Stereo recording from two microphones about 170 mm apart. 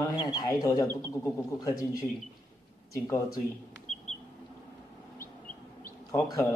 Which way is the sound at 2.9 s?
20° left (ahead or behind).